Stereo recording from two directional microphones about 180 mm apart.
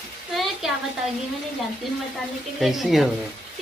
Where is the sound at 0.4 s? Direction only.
Centre (ahead or behind).